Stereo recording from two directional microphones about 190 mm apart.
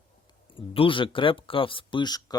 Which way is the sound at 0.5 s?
30° left (ahead or behind).